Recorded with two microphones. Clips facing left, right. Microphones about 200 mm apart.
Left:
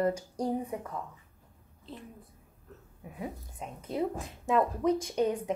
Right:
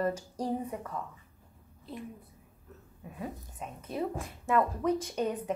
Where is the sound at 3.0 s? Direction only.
15° left (ahead or behind).